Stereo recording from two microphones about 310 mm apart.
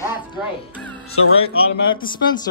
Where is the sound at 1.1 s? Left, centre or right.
Left.